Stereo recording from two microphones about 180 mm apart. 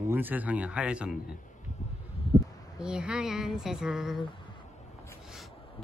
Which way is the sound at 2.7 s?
5° right (ahead or behind).